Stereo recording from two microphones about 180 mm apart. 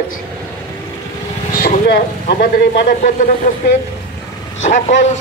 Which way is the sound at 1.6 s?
60° left (ahead or behind).